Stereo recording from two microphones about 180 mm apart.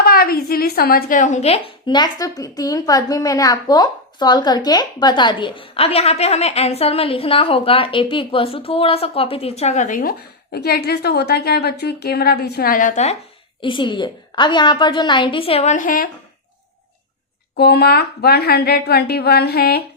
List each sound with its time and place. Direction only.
0.0 s speech: 55° left (ahead or behind)
13.6 s a woman's voice: 25° left (ahead or behind); by 16.0 s 50° left (ahead or behind)
17.6 s a woman's voice: 60° left (ahead or behind)